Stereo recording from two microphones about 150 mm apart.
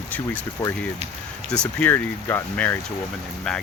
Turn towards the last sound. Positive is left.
turn(degrees=5)  # may be behind; listen again after turning